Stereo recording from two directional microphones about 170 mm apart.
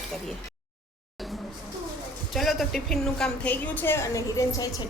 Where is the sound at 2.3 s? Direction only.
Centre (ahead or behind).